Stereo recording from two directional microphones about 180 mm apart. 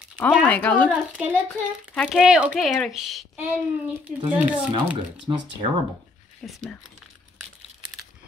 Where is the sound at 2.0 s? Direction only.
5° right (ahead or behind).